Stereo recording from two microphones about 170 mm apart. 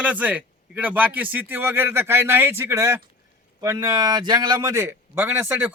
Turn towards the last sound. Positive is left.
turn(degrees=-10)  # may be behind; listen again after turning